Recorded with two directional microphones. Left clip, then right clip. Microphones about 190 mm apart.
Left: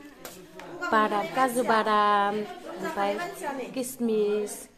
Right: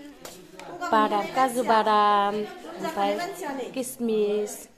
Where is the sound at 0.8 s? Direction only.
Centre (ahead or behind).